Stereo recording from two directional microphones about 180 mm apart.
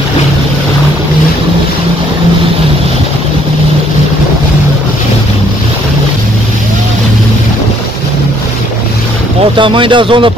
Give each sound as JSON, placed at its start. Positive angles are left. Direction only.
{"t": 9.6, "sound": "speech", "side_deg": -30}